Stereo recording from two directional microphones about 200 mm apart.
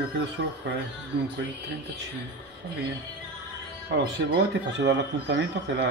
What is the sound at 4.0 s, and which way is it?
Speech, 55° right (ahead or behind).